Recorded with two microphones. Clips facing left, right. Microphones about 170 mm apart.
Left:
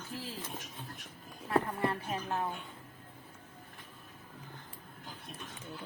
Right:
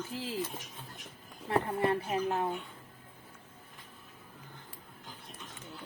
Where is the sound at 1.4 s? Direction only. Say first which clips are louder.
Right 2 dB; 25° right (ahead or behind).